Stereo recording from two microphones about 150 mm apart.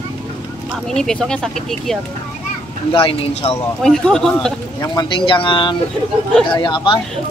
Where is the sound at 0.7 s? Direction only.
5° left (ahead or behind).